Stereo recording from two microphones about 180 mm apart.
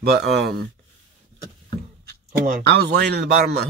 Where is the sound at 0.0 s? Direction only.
60° right (ahead or behind).